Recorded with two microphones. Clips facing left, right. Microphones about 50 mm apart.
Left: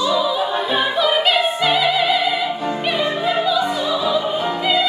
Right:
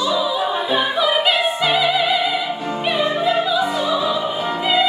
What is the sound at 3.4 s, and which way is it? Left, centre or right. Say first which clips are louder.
Music: even; centre.